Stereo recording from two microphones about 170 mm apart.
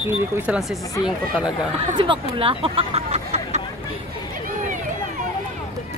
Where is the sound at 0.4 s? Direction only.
5° right (ahead or behind).